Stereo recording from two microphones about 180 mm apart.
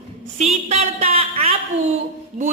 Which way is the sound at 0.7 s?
40° right (ahead or behind).